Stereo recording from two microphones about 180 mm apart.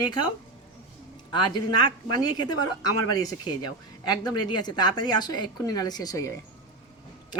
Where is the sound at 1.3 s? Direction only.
25° left (ahead or behind).